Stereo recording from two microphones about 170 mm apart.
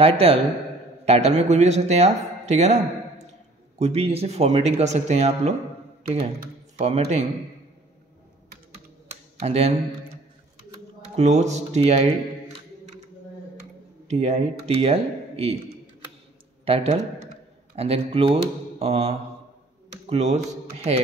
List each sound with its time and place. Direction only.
0.0 s speech: 35° right (ahead or behind)
6.8 s speech: 40° right (ahead or behind)
9.1 s computer keyboard: 35° right (ahead or behind)
11.1 s speech: 40° right (ahead or behind)
14.0 s speech: 40° right (ahead or behind)
16.6 s speech: 35° right (ahead or behind)
19.9 s computer keyboard: 40° right (ahead or behind)